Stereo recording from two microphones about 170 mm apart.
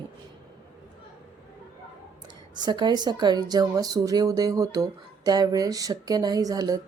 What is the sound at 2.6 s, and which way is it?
Speech, 25° right (ahead or behind).